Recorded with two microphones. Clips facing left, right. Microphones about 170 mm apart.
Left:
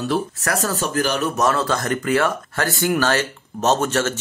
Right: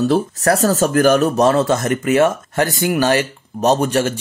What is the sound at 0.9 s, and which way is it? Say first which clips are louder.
Speech: right 9 dB; 50° right (ahead or behind).